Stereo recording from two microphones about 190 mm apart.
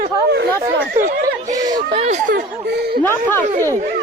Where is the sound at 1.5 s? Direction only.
35° right (ahead or behind); by 3.0 s 55° right (ahead or behind).